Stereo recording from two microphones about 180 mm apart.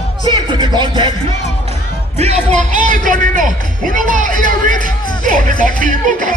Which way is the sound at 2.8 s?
45° right (ahead or behind).